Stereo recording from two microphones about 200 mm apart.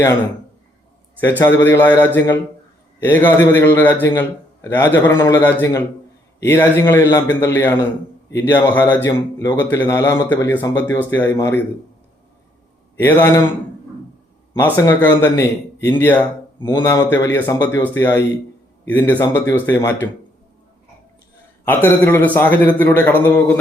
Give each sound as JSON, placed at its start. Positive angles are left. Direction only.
{"t": 1.5, "sound": "a man's voice", "side_deg": 10}
{"t": 13.0, "sound": "a man's voice", "side_deg": 10}
{"t": 14.8, "sound": "a man's voice", "side_deg": 10}
{"t": 16.6, "sound": "speech", "side_deg": 25}
{"t": 16.8, "sound": "a man's voice", "side_deg": 15}
{"t": 21.6, "sound": "a man's voice", "side_deg": 10}